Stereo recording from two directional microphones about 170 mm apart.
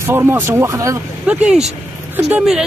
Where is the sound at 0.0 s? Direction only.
15° right (ahead or behind).